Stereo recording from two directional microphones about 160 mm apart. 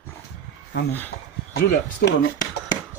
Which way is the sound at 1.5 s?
80° left.